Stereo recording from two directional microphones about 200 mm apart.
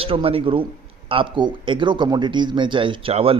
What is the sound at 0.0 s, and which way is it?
A man's voice, 25° right (ahead or behind).